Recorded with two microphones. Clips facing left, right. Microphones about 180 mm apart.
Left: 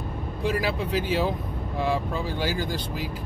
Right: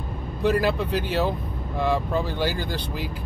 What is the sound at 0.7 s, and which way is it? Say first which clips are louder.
Speech: right 2 dB; 10° left (ahead or behind).